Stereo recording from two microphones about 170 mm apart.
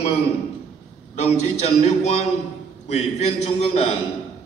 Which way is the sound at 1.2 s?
40° left (ahead or behind).